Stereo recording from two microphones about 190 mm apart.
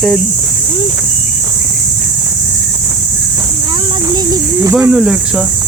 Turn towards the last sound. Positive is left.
turn(degrees=-5)  # may be behind; listen again after turning